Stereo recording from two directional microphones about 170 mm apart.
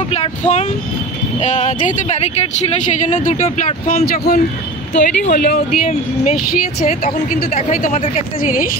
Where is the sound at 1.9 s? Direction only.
45° left (ahead or behind).